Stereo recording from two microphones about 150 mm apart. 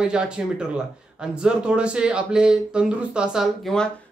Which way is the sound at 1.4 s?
5° right (ahead or behind).